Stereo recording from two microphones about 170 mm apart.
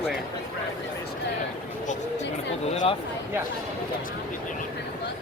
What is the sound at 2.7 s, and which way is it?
Speech, 35° left (ahead or behind).